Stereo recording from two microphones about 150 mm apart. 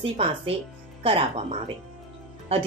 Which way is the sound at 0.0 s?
40° right (ahead or behind).